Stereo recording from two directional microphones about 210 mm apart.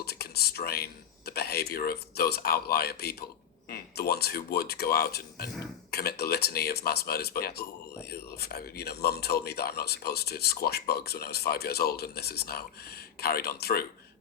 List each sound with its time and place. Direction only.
0.0 s speech: 50° left (ahead or behind)